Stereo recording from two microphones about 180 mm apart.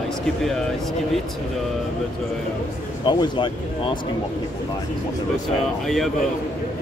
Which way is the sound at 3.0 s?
25° left (ahead or behind).